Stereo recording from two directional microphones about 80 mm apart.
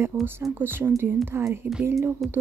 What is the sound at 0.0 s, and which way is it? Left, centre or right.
Speech, right.